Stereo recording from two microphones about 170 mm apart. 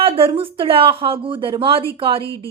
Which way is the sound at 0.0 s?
30° right (ahead or behind).